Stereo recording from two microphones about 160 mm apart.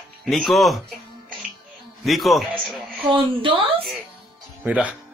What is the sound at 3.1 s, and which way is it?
Speech, 35° right (ahead or behind).